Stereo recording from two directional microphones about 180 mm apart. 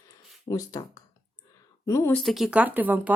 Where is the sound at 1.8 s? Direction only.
15° left (ahead or behind).